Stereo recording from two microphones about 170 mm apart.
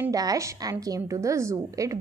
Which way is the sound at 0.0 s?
20° right (ahead or behind).